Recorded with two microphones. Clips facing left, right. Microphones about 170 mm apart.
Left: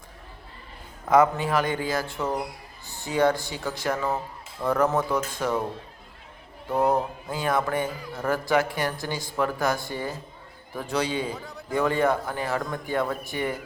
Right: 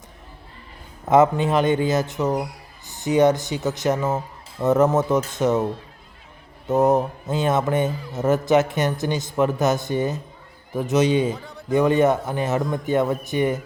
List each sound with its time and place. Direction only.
1.0 s speech: 25° right (ahead or behind)
6.9 s speech: 20° right (ahead or behind)